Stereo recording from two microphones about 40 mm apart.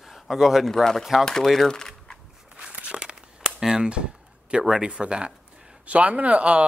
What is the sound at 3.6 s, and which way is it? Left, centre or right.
Chop, centre.